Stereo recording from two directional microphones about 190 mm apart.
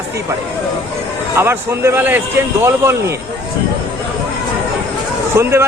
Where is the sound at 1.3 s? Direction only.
10° right (ahead or behind).